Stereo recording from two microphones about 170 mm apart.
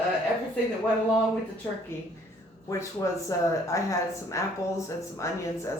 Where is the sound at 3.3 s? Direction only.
20° left (ahead or behind).